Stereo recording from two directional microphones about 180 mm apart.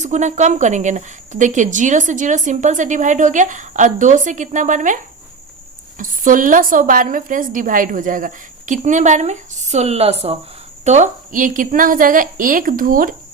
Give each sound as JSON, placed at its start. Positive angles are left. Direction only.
{"t": 0.0, "sound": "a woman's voice", "side_deg": -40}
{"t": 6.0, "sound": "a woman's voice", "side_deg": -50}